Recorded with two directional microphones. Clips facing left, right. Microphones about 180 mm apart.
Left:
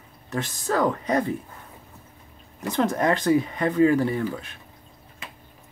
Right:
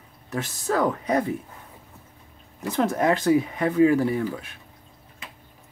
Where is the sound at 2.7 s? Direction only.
5° right (ahead or behind).